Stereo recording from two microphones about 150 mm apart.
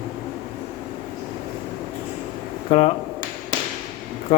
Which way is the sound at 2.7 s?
45° left (ahead or behind).